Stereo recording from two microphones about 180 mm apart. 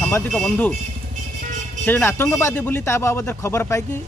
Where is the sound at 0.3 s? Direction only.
5° left (ahead or behind).